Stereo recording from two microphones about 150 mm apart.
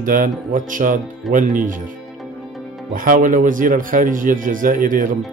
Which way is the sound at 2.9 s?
65° right (ahead or behind).